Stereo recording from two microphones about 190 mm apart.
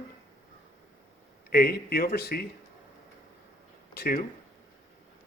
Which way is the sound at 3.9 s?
55° left (ahead or behind).